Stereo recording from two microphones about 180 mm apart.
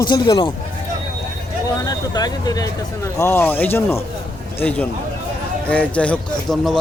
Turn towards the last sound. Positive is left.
turn(degrees=5)  # may be behind; listen again after turning